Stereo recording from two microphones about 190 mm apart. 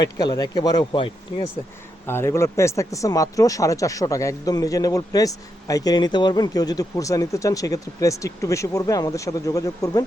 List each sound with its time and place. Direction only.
0.0 s speech: 20° left (ahead or behind)
2.0 s speech: 10° left (ahead or behind)